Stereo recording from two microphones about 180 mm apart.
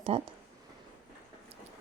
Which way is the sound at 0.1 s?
35° right (ahead or behind).